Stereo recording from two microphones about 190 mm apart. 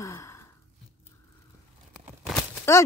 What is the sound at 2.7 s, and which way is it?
Speech, 15° left (ahead or behind).